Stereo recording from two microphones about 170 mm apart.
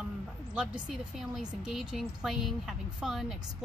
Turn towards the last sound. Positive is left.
turn(degrees=0)  # may be behind; listen again after turning